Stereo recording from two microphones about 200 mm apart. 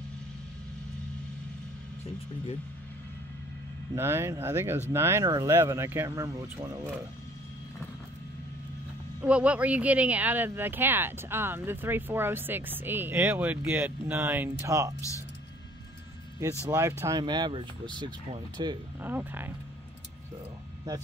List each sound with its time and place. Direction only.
3.9 s speech: 10° right (ahead or behind)
9.2 s speech: 5° right (ahead or behind)
15.0 s speech: 15° left (ahead or behind)
16.6 s speech: 15° right (ahead or behind)
18.9 s speech: 10° right (ahead or behind)